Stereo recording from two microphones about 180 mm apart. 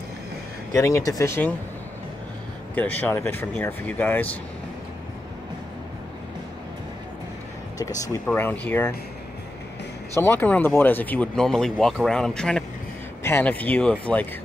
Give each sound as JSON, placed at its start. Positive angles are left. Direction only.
{"t": 0.7, "sound": "speech", "side_deg": 15}
{"t": 2.7, "sound": "speech", "side_deg": 10}
{"t": 8.4, "sound": "speech", "side_deg": 10}
{"t": 10.1, "sound": "speech", "side_deg": 10}